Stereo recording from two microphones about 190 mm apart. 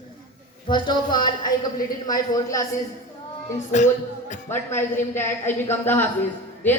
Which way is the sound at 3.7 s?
40° left (ahead or behind).